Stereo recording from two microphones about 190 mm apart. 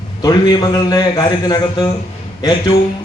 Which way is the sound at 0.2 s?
20° left (ahead or behind).